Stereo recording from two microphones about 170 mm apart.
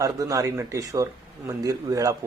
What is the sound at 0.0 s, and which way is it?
Speech, 20° right (ahead or behind).